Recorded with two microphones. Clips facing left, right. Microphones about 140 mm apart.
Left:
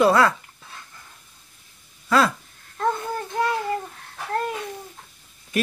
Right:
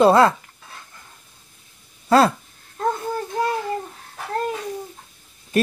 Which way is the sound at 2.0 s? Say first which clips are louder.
Right 4 dB; 30° right (ahead or behind).